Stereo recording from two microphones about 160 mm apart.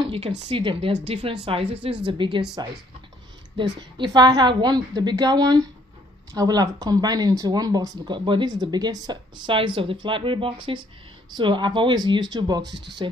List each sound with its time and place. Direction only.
0.0 s speech: 40° right (ahead or behind)
4.0 s speech: 25° right (ahead or behind)